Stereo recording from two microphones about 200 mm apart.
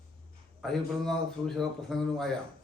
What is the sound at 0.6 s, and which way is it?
A man's voice, centre (ahead or behind).